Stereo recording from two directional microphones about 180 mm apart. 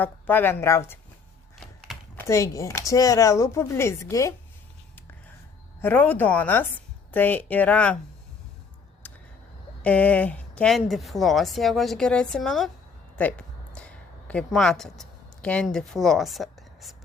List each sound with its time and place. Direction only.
0.0 s speech: 10° left (ahead or behind)
2.1 s speech: 15° left (ahead or behind)
5.8 s speech: 10° left (ahead or behind)
9.0 s a sound: 10° left (ahead or behind)
9.8 s speech: 10° left (ahead or behind)
13.1 s a sound: 5° left (ahead or behind)